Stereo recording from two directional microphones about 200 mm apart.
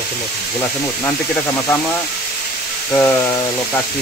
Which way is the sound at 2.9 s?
10° left (ahead or behind).